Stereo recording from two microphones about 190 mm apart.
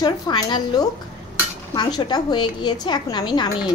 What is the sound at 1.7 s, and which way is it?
A woman's voice, 20° left (ahead or behind).